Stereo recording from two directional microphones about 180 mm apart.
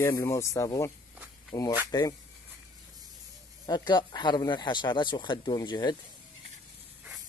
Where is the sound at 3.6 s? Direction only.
25° left (ahead or behind).